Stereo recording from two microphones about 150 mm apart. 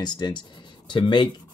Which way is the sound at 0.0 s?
30° left (ahead or behind).